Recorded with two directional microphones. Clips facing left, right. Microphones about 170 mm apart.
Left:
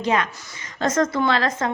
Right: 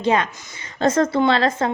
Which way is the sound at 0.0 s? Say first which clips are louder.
Right 3 dB; 30° right (ahead or behind).